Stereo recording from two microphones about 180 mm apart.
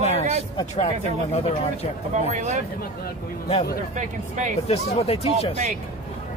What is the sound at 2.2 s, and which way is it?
Speech, 40° right (ahead or behind).